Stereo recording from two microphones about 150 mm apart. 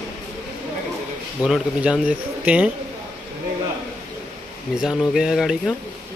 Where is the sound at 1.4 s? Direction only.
5° right (ahead or behind).